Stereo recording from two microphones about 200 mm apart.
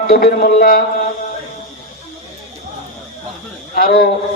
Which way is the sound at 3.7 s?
50° left (ahead or behind).